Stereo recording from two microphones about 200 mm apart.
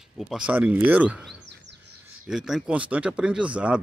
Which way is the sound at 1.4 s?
60° right (ahead or behind).